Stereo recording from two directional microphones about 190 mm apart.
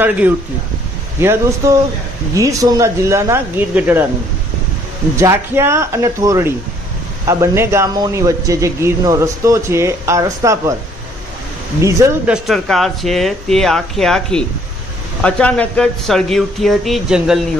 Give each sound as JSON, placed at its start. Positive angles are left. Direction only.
{"t": 0.0, "sound": "a man's voice", "side_deg": -10}
{"t": 5.1, "sound": "a man's voice", "side_deg": -15}
{"t": 11.8, "sound": "a man's voice", "side_deg": -15}
{"t": 12.3, "sound": "speech", "side_deg": 0}